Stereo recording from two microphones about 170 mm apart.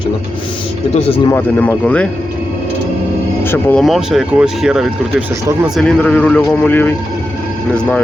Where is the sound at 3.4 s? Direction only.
15° left (ahead or behind).